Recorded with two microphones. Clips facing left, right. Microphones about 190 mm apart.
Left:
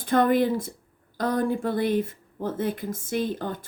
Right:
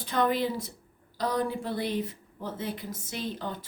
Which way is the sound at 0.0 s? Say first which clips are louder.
Left 6 dB; 50° left (ahead or behind).